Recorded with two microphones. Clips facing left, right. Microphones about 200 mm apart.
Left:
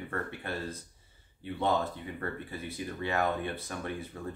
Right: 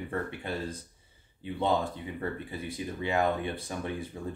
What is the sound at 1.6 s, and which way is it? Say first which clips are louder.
Speech: right 1 dB; 15° right (ahead or behind).